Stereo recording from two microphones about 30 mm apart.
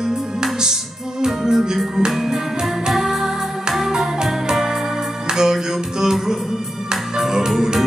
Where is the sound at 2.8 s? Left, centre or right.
Centre.